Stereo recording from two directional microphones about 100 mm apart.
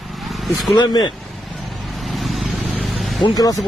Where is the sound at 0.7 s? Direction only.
45° left (ahead or behind).